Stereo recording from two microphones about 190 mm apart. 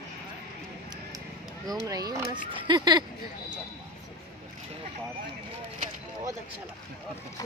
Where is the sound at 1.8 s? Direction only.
20° right (ahead or behind).